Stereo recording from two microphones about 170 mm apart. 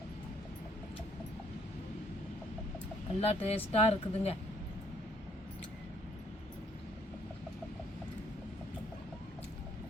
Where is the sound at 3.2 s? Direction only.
35° left (ahead or behind).